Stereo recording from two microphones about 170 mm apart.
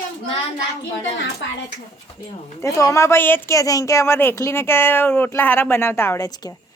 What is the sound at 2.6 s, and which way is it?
Speech, 15° left (ahead or behind).